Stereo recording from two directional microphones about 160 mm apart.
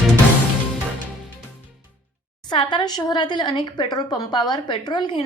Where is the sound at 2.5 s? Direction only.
30° left (ahead or behind).